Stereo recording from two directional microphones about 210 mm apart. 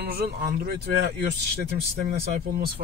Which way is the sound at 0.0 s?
45° right (ahead or behind).